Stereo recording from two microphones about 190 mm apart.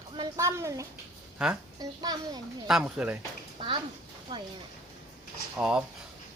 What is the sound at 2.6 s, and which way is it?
Speech, 5° right (ahead or behind).